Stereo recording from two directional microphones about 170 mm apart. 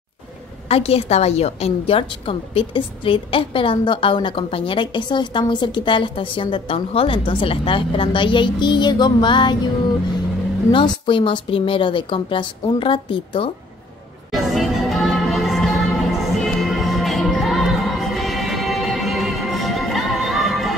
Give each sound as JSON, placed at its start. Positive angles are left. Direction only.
{"t": 0.7, "sound": "a woman's voice", "side_deg": 35}
{"t": 10.7, "sound": "a woman's voice", "side_deg": 30}
{"t": 14.5, "sound": "music", "side_deg": 0}